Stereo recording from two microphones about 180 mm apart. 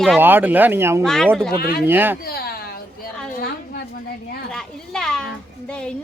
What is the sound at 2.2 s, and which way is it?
Speech, 60° left (ahead or behind).